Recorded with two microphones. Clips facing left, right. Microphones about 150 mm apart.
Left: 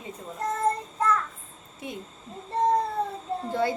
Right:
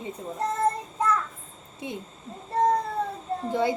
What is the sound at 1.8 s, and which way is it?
Speech, 20° right (ahead or behind).